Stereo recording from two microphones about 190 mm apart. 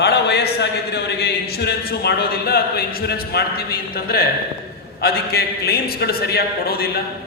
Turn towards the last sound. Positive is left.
turn(degrees=55)  # may be behind; listen again after turning